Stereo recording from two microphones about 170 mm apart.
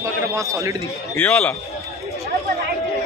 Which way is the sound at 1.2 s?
10° left (ahead or behind).